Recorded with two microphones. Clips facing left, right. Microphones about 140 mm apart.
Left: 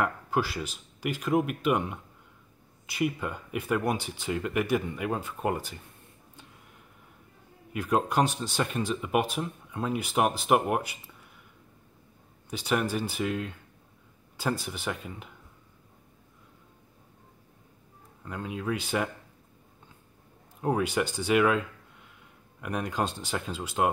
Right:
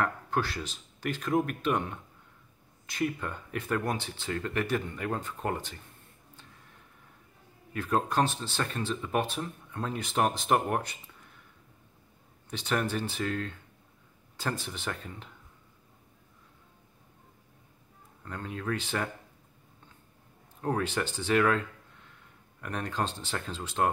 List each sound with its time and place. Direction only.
0.0 s speech: 10° left (ahead or behind)
7.7 s speech: 10° left (ahead or behind)
12.4 s speech: 10° left (ahead or behind)
18.2 s speech: 10° left (ahead or behind)
20.6 s speech: 10° left (ahead or behind)